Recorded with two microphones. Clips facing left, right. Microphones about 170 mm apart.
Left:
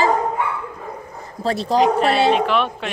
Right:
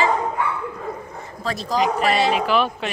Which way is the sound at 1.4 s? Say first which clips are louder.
Left 5 dB; 30° left (ahead or behind).